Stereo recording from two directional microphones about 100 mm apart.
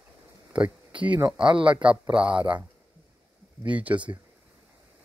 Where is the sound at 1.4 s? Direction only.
55° right (ahead or behind).